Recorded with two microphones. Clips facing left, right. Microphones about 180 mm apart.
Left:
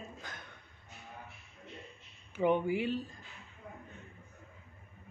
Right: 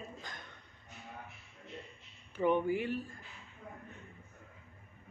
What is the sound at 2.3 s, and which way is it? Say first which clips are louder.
Speech: left 1 dB; 15° left (ahead or behind).